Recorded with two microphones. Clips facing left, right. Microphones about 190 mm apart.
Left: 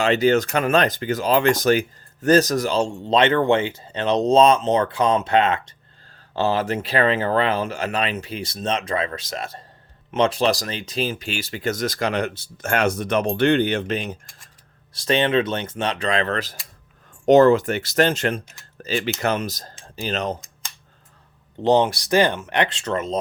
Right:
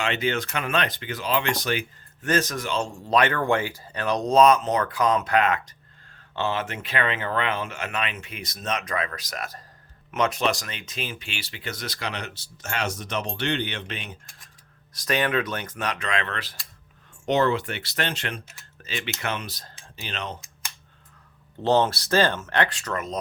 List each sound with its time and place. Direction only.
0.0 s speech: 40° left (ahead or behind)
14.9 s speech: 25° left (ahead or behind); by 20.3 s 40° left (ahead or behind)
21.6 s speech: 15° left (ahead or behind)